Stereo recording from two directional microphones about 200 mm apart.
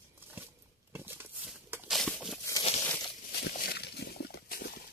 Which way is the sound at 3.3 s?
55° left (ahead or behind).